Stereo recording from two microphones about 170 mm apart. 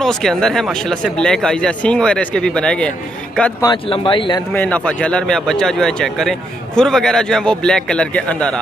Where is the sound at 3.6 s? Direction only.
30° left (ahead or behind).